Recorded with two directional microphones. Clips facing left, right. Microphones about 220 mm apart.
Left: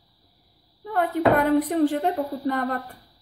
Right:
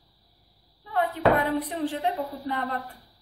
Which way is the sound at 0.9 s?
45° left (ahead or behind).